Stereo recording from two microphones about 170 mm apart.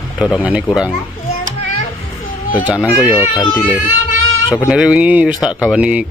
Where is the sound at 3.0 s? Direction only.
20° left (ahead or behind).